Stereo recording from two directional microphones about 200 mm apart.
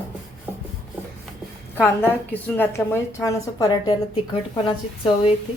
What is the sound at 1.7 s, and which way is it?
A woman's voice, 10° left (ahead or behind).